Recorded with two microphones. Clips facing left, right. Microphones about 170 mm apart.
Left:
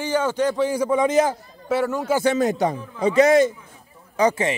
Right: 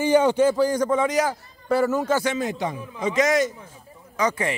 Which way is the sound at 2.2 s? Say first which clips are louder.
Left 6 dB; 40° left (ahead or behind).